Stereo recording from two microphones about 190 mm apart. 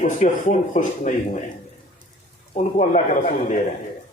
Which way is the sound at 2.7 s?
40° left (ahead or behind).